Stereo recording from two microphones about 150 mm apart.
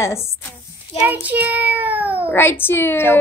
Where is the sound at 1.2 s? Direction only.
10° right (ahead or behind).